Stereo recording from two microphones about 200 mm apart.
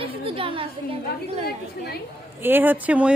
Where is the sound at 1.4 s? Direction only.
50° left (ahead or behind).